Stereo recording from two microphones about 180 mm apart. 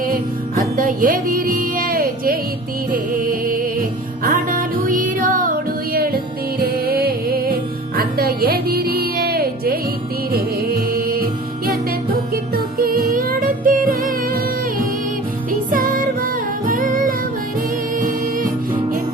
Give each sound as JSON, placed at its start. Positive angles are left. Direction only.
{"t": 0.0, "sound": "music", "side_deg": -50}
{"t": 15.7, "sound": "music", "side_deg": -50}
{"t": 18.0, "sound": "singing", "side_deg": -50}